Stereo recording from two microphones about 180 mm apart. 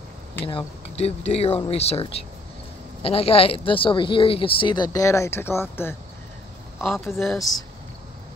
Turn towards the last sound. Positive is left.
turn(degrees=0)  # may be behind; listen again after turning